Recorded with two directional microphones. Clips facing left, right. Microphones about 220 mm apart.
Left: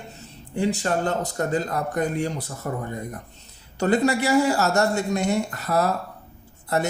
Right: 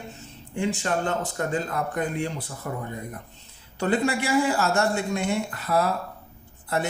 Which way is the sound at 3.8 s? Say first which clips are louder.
Left 3 dB; 40° left (ahead or behind).